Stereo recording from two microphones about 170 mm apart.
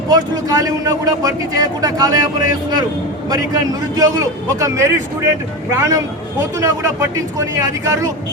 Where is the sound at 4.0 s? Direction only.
20° right (ahead or behind).